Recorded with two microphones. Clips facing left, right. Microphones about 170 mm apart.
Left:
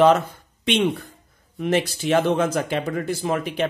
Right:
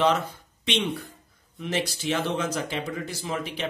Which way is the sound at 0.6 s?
50° left (ahead or behind).